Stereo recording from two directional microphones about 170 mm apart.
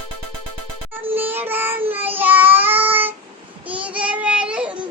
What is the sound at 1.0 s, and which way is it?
Child singing, 10° right (ahead or behind).